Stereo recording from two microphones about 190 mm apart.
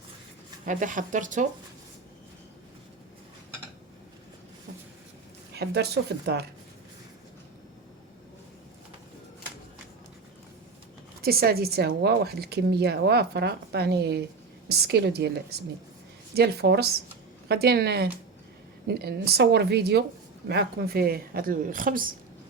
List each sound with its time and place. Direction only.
0.6 s a woman's voice: 45° right (ahead or behind)
5.5 s a woman's voice: 60° right (ahead or behind)
11.2 s a woman's voice: 55° right (ahead or behind)